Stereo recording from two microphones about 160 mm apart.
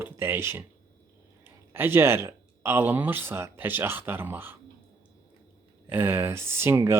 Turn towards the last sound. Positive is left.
turn(degrees=-15)  # may be behind; listen again after turning